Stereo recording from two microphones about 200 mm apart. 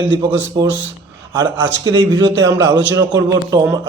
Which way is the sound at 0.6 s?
20° right (ahead or behind).